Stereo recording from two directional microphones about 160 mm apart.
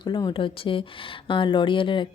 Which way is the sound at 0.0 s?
25° left (ahead or behind).